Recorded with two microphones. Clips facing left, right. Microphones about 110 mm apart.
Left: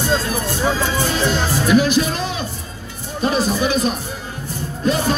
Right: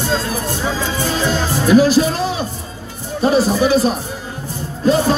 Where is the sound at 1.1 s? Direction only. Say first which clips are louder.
Right 1 dB; 35° right (ahead or behind).